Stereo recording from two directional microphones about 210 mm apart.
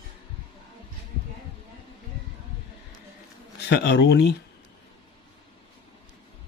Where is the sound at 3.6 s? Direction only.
55° left (ahead or behind).